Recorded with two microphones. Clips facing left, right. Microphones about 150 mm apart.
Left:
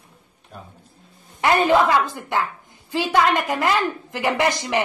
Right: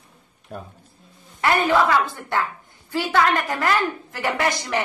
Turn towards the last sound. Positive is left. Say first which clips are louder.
# left 2 dB
turn(degrees=20)  # may be behind; listen again after turning